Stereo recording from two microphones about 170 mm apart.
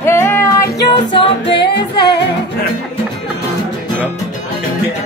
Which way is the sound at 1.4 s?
80° left.